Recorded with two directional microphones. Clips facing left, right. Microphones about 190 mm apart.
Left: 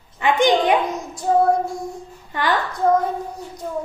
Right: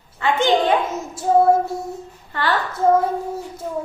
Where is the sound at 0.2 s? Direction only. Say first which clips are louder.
Left 1 dB; 15° left (ahead or behind).